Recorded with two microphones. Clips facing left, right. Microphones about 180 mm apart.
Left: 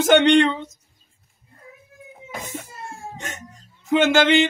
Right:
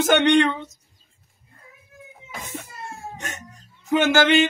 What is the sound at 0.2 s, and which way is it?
Speech, 20° left (ahead or behind).